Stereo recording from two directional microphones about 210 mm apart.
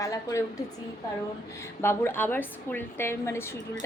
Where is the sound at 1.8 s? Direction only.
10° left (ahead or behind).